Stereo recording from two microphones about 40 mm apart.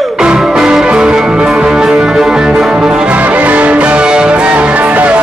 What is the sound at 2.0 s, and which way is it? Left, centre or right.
Music, centre.